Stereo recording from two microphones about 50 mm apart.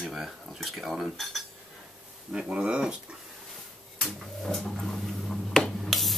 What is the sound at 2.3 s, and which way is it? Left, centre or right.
Speech, right.